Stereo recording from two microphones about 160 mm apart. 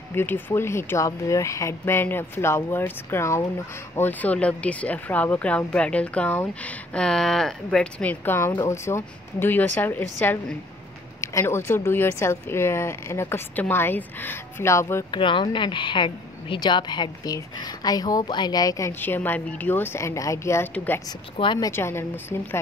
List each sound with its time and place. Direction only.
0.1 s speech: 15° left (ahead or behind)
11.1 s speech: 15° left (ahead or behind)
15.0 s speech: 30° left (ahead or behind); by 21.0 s 10° left (ahead or behind)
21.4 s speech: 25° left (ahead or behind)